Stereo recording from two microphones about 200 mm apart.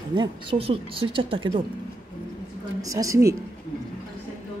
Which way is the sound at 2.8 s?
15° right (ahead or behind).